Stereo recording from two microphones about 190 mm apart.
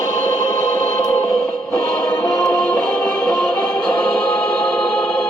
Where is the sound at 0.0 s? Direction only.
20° left (ahead or behind).